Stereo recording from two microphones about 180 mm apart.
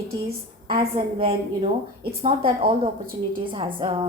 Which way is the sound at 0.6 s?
30° right (ahead or behind).